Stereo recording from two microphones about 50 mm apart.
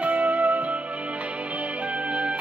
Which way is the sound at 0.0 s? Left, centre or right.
Right.